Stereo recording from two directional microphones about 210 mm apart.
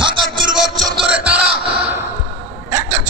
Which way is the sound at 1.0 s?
5° right (ahead or behind).